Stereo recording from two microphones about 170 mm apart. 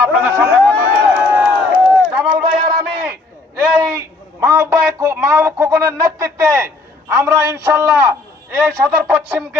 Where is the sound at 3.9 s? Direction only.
15° right (ahead or behind).